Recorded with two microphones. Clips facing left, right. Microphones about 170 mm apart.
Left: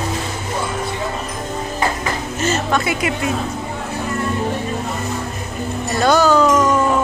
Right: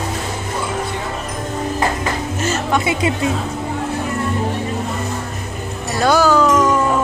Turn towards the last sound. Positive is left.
turn(degrees=0)  # may be behind; listen again after turning